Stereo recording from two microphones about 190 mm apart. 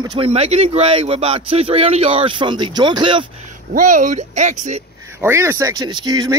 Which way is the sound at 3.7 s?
45° right (ahead or behind).